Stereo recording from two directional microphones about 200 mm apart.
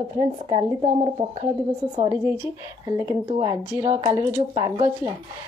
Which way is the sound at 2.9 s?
15° right (ahead or behind).